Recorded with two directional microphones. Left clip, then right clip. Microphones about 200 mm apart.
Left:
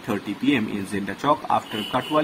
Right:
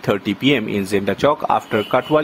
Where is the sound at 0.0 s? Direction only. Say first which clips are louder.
Right 7 dB; 50° right (ahead or behind).